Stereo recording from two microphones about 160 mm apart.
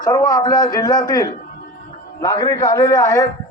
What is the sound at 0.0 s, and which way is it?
A man's voice, 20° left (ahead or behind).